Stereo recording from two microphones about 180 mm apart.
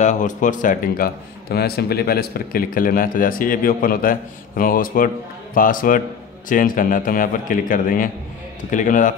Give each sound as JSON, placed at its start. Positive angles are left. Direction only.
{"t": 0.0, "sound": "a man's voice", "side_deg": 45}